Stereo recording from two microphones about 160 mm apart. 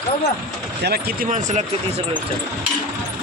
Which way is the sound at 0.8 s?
75° right (ahead or behind).